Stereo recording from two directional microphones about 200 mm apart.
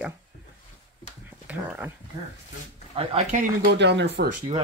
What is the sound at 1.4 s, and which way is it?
Speech, 10° right (ahead or behind).